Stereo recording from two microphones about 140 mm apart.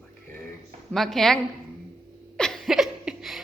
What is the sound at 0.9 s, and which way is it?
Speech, centre (ahead or behind).